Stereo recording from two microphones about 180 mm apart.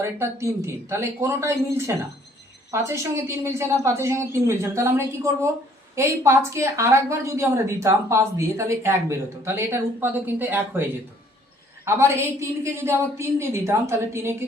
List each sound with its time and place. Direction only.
0.0 s a woman's voice: 15° right (ahead or behind)
11.9 s a woman's voice: 15° right (ahead or behind)